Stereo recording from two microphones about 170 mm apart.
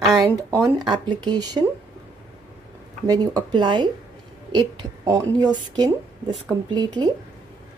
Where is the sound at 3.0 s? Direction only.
25° right (ahead or behind).